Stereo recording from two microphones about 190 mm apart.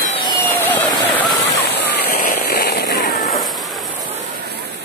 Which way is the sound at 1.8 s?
55° left (ahead or behind).